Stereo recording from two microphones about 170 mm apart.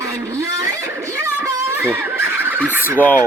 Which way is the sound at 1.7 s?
10° right (ahead or behind).